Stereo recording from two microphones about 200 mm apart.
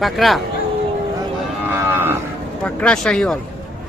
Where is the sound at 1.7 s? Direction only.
10° right (ahead or behind).